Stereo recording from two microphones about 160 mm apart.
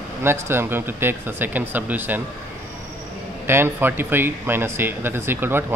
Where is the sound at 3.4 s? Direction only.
15° right (ahead or behind).